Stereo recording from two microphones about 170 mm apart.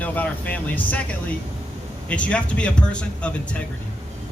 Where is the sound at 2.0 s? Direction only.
5° left (ahead or behind).